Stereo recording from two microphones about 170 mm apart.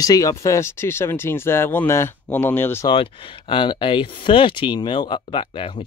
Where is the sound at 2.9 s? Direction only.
30° left (ahead or behind).